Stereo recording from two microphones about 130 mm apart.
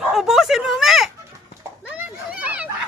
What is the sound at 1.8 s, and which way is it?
Children playing, 10° right (ahead or behind).